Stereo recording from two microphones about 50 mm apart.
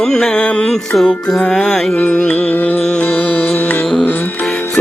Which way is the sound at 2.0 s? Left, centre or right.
Left.